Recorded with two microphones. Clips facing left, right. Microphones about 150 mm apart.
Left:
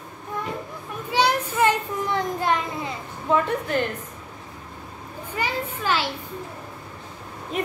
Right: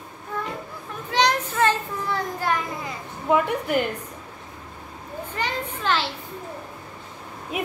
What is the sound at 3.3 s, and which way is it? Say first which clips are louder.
Speech: right 1 dB; 15° right (ahead or behind).